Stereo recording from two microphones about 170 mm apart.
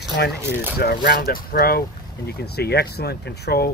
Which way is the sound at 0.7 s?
65° left (ahead or behind).